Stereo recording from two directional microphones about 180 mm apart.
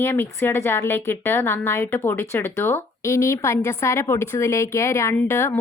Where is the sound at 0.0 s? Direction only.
10° left (ahead or behind).